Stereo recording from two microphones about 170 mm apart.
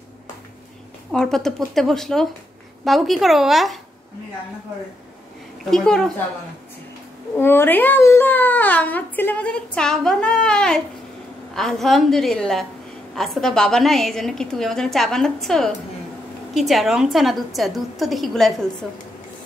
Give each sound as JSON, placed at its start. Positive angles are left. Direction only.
{"t": 1.1, "sound": "a woman's voice", "side_deg": 5}
{"t": 5.7, "sound": "a woman's voice", "side_deg": 5}
{"t": 7.3, "sound": "a child's voice", "side_deg": 15}